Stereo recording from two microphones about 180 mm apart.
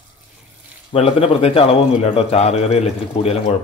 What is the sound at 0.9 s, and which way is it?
A man's voice, 35° left (ahead or behind).